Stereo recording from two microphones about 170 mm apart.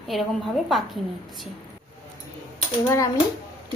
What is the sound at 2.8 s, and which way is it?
Speech, 15° left (ahead or behind).